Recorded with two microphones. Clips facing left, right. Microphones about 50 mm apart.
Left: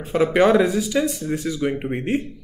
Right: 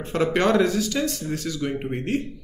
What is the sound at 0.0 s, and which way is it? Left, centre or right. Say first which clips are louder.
Speech: left 4 dB; centre.